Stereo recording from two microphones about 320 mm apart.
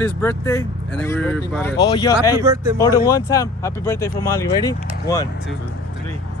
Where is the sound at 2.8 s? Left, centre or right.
Centre.